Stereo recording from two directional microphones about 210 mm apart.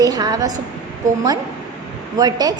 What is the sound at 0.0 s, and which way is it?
Speech, 20° right (ahead or behind).